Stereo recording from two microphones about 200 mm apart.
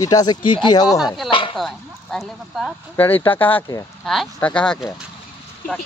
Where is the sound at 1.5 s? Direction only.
Centre (ahead or behind).